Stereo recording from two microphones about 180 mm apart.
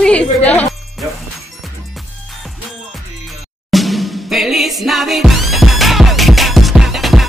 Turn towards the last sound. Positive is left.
turn(degrees=0)  # may be behind; listen again after turning